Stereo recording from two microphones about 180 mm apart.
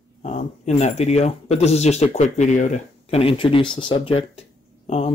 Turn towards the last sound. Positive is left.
turn(degrees=35)  # may be behind; listen again after turning